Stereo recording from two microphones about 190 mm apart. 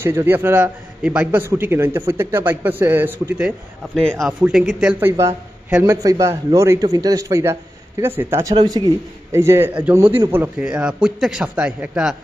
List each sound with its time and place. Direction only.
0.0 s a man's voice: 10° right (ahead or behind)
3.9 s a man's voice: centre (ahead or behind)